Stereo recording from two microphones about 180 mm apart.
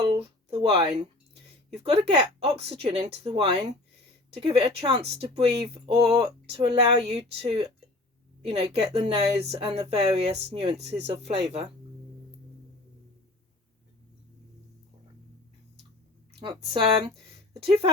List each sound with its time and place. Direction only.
0.1 s a sound: 30° right (ahead or behind)
1.7 s a woman's voice: 35° right (ahead or behind)
16.4 s a woman's voice: 30° right (ahead or behind)